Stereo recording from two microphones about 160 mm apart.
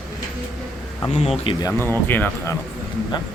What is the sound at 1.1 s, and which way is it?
Speech, 40° left (ahead or behind).